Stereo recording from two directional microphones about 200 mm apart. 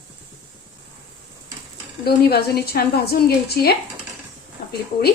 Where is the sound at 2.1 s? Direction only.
50° left (ahead or behind).